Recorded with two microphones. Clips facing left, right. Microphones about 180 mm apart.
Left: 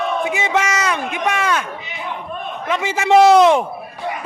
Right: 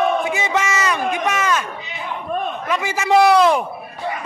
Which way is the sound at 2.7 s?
20° left (ahead or behind).